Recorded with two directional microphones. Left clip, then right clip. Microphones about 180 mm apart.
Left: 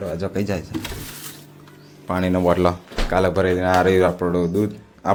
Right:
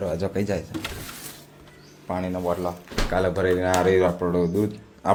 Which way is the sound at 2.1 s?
35° left (ahead or behind).